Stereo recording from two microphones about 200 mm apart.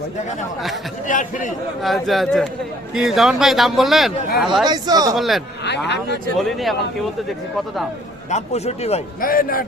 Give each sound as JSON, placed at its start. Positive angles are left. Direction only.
{"t": 1.0, "sound": "a man's voice", "side_deg": 40}
{"t": 1.8, "sound": "a man's voice", "side_deg": 0}
{"t": 4.6, "sound": "speech", "side_deg": -20}
{"t": 5.1, "sound": "a man's voice", "side_deg": 0}
{"t": 5.6, "sound": "speech", "side_deg": 60}
{"t": 6.3, "sound": "a man's voice", "side_deg": 0}
{"t": 8.3, "sound": "a man's voice", "side_deg": 35}
{"t": 9.2, "sound": "a man's voice", "side_deg": 45}